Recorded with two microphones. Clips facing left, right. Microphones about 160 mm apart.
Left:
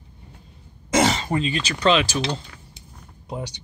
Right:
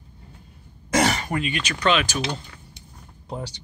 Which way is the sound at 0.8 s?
20° left (ahead or behind).